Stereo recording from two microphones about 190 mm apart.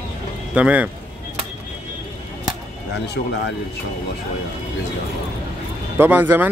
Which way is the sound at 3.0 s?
65° left (ahead or behind).